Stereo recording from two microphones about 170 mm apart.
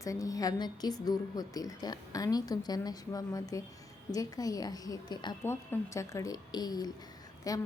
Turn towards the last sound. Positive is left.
turn(degrees=20)  # may be behind; listen again after turning